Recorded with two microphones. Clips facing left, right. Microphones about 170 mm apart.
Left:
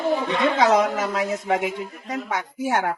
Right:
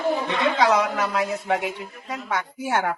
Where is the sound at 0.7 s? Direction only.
45° left (ahead or behind).